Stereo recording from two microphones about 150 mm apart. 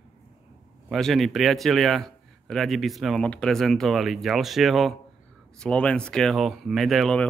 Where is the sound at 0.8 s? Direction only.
Centre (ahead or behind).